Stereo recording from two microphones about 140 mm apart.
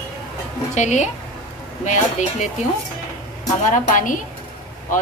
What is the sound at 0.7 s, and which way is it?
Speech, 55° left (ahead or behind).